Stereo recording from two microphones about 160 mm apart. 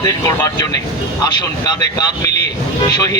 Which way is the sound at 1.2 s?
25° left (ahead or behind).